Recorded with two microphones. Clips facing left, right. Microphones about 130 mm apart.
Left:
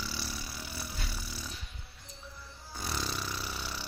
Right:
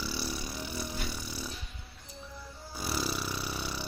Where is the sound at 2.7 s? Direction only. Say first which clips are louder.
Right 3 dB; 5° right (ahead or behind).